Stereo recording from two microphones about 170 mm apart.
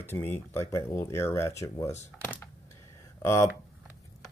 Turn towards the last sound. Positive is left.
turn(degrees=15)  # may be behind; listen again after turning